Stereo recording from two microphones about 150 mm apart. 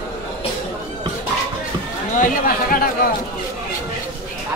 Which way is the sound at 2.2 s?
70° left (ahead or behind).